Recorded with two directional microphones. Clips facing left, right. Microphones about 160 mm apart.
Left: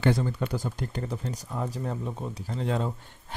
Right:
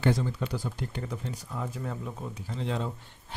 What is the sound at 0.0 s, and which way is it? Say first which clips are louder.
Speech: left 2 dB; 55° left (ahead or behind).